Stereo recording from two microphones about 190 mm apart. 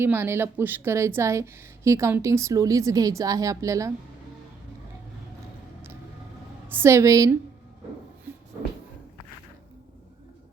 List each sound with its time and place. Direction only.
0.0 s a woman's voice: 10° right (ahead or behind)
6.7 s a woman's voice: 10° right (ahead or behind)